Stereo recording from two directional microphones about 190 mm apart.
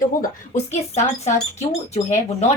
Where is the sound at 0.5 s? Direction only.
35° left (ahead or behind).